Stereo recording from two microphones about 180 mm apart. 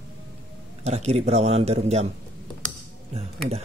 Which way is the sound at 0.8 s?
35° right (ahead or behind).